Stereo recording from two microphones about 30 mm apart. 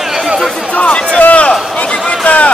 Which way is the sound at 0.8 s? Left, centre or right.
Left.